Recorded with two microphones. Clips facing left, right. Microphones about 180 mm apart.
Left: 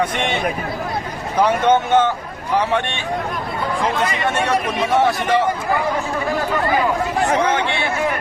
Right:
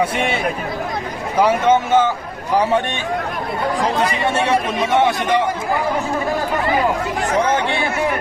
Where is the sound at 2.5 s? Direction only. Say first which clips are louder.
Right 2 dB; 40° right (ahead or behind).